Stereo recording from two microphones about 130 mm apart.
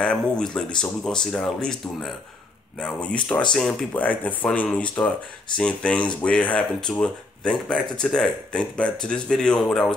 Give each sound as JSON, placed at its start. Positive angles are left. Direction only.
{"t": 0.0, "sound": "speech", "side_deg": 5}